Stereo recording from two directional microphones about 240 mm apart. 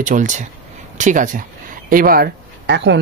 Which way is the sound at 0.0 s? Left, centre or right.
Right.